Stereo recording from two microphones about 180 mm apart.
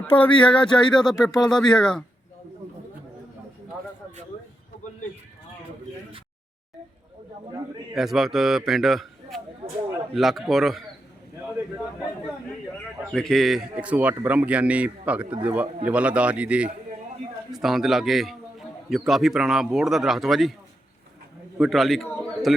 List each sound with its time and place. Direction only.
0.4 s a man's voice: 5° left (ahead or behind)
7.9 s a man's voice: centre (ahead or behind)
9.6 s a sound: 35° right (ahead or behind)
10.2 s a man's voice: centre (ahead or behind)
13.1 s a man's voice: centre (ahead or behind)
21.6 s a man's voice: centre (ahead or behind)